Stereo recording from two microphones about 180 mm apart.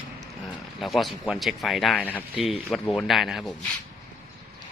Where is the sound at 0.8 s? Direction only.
Centre (ahead or behind).